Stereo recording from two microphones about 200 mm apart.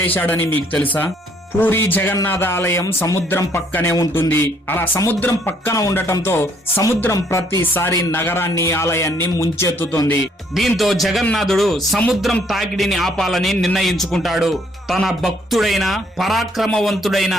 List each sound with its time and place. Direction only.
0.0 s speech: 10° left (ahead or behind)
10.5 s a man's voice: centre (ahead or behind)